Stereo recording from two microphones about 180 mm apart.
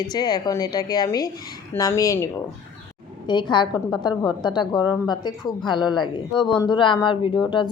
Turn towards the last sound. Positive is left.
turn(degrees=25)  # may be behind; listen again after turning